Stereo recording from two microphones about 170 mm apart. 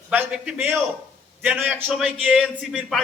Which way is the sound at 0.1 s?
10° right (ahead or behind).